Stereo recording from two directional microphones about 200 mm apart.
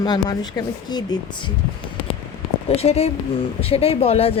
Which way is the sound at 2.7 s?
30° left (ahead or behind).